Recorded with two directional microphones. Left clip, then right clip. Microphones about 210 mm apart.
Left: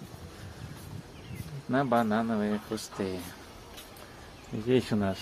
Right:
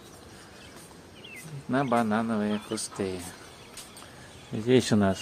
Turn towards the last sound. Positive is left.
turn(degrees=-20)  # may be behind; listen again after turning